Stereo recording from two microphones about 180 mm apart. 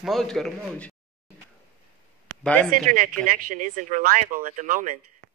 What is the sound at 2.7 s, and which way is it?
Speech, 45° right (ahead or behind).